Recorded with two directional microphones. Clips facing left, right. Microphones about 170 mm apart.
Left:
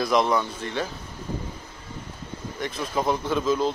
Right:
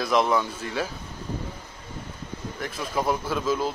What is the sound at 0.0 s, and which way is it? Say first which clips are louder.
Speech: left 1 dB; centre (ahead or behind).